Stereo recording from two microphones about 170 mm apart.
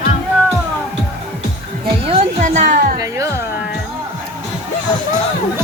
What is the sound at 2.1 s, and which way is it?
Music, 35° right (ahead or behind).